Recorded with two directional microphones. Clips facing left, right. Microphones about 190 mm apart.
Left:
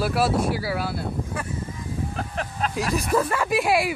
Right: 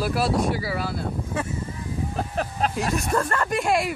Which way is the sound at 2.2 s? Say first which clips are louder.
Right 5 dB; 35° right (ahead or behind).